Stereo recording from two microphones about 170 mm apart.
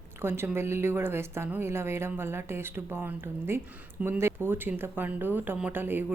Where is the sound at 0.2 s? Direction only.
15° right (ahead or behind).